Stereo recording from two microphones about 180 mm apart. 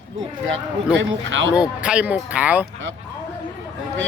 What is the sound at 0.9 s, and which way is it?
Speech, 90° right.